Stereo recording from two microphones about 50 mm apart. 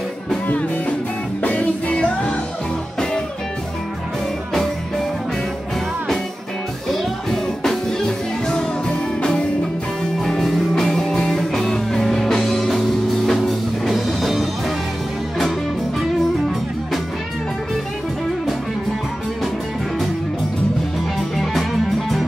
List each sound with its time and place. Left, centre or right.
1.4 s music: left
6.9 s music: centre
21.4 s music: centre